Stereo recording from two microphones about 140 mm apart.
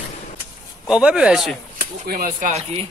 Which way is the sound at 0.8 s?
5° right (ahead or behind).